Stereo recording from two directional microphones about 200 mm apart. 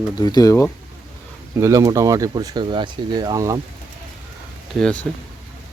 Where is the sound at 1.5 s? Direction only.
15° right (ahead or behind).